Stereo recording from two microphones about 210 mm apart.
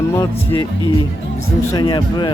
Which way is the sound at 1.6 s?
20° left (ahead or behind).